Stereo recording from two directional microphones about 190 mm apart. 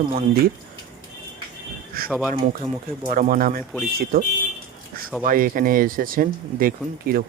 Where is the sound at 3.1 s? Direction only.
45° right (ahead or behind).